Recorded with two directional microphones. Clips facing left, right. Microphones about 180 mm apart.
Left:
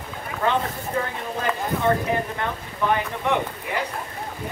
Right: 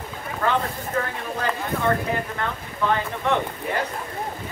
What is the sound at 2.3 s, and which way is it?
Speech, 15° left (ahead or behind).